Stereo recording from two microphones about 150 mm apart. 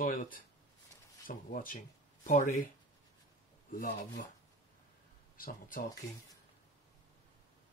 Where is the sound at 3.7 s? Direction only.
65° left (ahead or behind).